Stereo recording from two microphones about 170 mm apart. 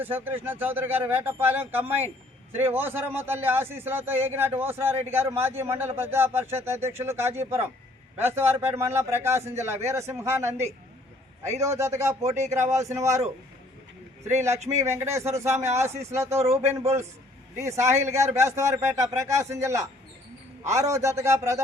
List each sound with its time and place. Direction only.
0.0 s a man's voice: 10° right (ahead or behind)
14.8 s a man's voice: 15° right (ahead or behind)